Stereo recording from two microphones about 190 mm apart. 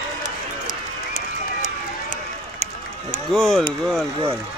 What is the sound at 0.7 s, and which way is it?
Run, 40° left (ahead or behind).